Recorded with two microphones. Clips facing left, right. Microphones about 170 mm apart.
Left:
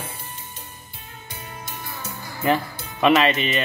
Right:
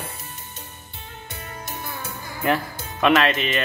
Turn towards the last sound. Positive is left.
turn(degrees=0)  # may be behind; listen again after turning